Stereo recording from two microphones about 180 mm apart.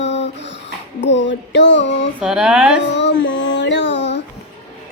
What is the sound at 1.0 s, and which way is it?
Female singing, 85° left.